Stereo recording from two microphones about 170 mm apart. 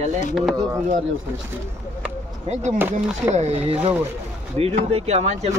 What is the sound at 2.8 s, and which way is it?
Speech, 10° right (ahead or behind).